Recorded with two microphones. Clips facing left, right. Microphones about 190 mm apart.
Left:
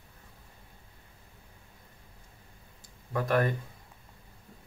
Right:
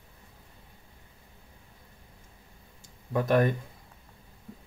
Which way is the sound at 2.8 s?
20° right (ahead or behind).